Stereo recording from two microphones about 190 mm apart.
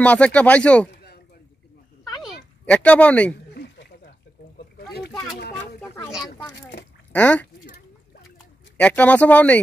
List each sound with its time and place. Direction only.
0.0 s speech: 5° left (ahead or behind)
0.9 s a sound: 60° left (ahead or behind)
2.6 s speech: 5° left (ahead or behind)
3.5 s a sound: 65° left (ahead or behind)
7.1 s speech: 10° left (ahead or behind)
8.7 s speech: 10° left (ahead or behind)